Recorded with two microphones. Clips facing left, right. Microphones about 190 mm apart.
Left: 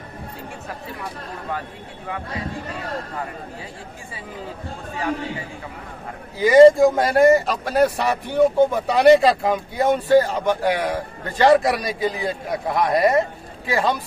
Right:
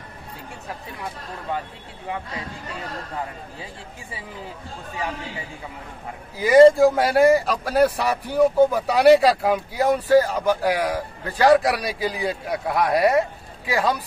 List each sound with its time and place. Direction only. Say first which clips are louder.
6.3 s a man's voice: left 2 dB; 5° right (ahead or behind)